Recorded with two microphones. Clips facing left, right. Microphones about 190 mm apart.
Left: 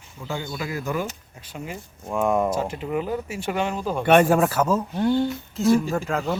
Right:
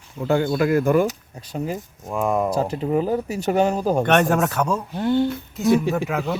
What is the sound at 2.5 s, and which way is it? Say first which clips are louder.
Speech: right 4 dB; 35° right (ahead or behind).